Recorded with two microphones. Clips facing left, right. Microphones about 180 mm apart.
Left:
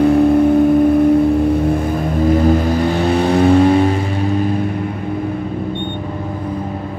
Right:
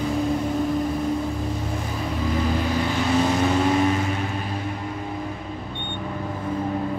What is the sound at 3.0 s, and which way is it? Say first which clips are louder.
Vehicle: left 5 dB; 60° left (ahead or behind).